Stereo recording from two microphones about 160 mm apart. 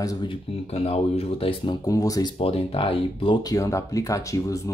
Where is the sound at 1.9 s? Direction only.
20° left (ahead or behind).